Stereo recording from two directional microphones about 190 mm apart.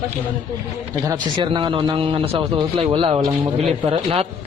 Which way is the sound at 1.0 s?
25° right (ahead or behind).